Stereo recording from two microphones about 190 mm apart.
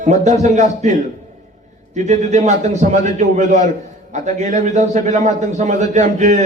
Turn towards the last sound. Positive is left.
turn(degrees=-40)  # may be behind; listen again after turning